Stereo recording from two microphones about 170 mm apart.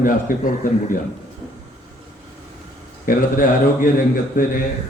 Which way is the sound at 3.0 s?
55° left (ahead or behind).